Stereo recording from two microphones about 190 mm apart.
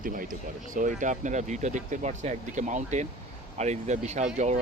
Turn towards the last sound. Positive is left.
turn(degrees=-40)  # may be behind; listen again after turning